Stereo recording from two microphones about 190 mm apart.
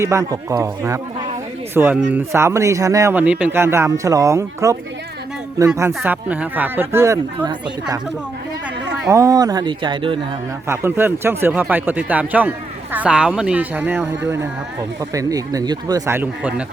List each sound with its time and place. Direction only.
0.0 s a man's voice: 15° right (ahead or behind)
5.9 s a man's voice: 5° right (ahead or behind)
9.0 s speech: 20° right (ahead or behind)
10.7 s a man's voice: 10° right (ahead or behind)